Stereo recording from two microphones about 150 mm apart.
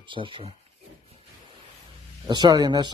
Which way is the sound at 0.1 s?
35° right (ahead or behind).